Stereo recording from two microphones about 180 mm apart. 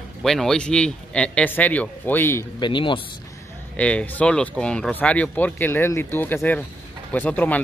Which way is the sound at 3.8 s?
5° left (ahead or behind).